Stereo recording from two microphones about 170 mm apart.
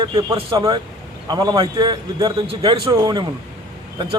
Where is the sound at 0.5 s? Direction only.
20° right (ahead or behind).